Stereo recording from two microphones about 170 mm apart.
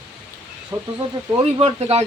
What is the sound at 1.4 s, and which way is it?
Speech, 35° right (ahead or behind).